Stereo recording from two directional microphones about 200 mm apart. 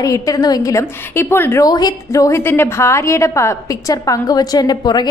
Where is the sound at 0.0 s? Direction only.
15° left (ahead or behind).